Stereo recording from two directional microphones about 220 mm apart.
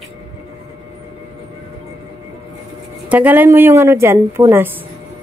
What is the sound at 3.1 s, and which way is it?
A woman's voice, 5° right (ahead or behind).